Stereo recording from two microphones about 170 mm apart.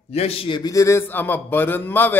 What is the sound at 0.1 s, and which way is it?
A man's voice, 35° left (ahead or behind).